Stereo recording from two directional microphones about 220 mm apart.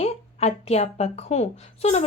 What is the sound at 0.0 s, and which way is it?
A woman's voice, 30° left (ahead or behind).